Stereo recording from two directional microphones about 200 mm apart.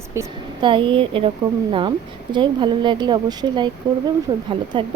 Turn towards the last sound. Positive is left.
turn(degrees=-25)  # may be behind; listen again after turning